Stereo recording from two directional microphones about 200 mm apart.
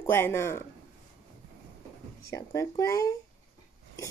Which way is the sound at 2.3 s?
15° left (ahead or behind).